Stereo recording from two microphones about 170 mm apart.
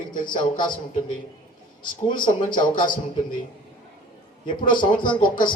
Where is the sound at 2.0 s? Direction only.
25° left (ahead or behind).